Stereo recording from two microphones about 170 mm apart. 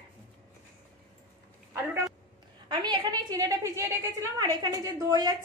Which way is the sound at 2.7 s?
25° right (ahead or behind).